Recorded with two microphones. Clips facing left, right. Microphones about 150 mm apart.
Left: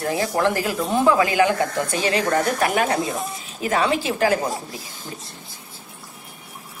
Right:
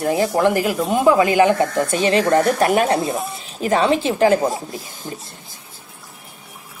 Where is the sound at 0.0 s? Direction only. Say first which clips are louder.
Right 4 dB; 20° right (ahead or behind).